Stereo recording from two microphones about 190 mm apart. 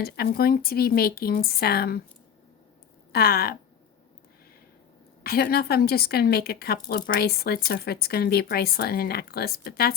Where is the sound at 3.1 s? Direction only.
55° left (ahead or behind).